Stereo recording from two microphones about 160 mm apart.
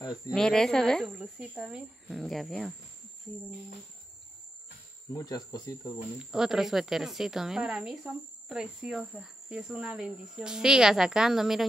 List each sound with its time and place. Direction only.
0.1 s speech: 5° left (ahead or behind)
5.1 s speech: 25° left (ahead or behind)
6.1 s speech: 5° right (ahead or behind)